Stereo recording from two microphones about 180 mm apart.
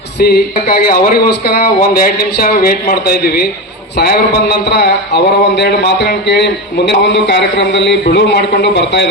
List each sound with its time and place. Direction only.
0.2 s a man's voice: 55° left (ahead or behind); by 9.0 s 70° left (ahead or behind)